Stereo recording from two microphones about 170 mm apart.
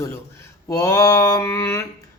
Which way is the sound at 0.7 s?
20° left (ahead or behind).